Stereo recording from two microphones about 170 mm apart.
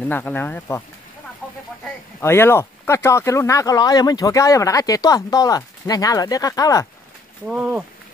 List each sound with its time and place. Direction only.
0.0 s speech: 10° left (ahead or behind)
2.1 s speech: 15° left (ahead or behind)
7.4 s speech: 10° right (ahead or behind)